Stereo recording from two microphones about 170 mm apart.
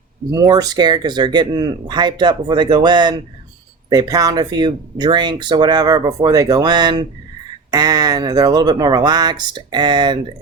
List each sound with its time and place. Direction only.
0.3 s speech: 20° right (ahead or behind)